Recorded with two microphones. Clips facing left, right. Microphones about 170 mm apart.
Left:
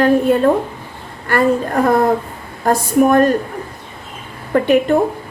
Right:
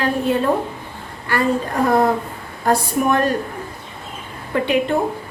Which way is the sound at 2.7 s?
45° left (ahead or behind).